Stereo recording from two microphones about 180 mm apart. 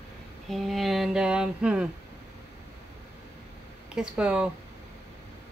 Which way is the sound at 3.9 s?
5° right (ahead or behind).